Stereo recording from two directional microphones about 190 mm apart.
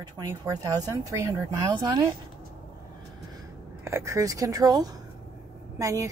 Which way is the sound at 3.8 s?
15° right (ahead or behind).